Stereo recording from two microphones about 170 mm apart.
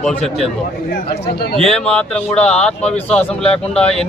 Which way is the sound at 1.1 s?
70° left (ahead or behind).